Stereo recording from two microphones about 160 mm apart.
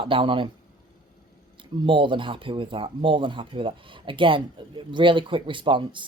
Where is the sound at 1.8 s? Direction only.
30° right (ahead or behind).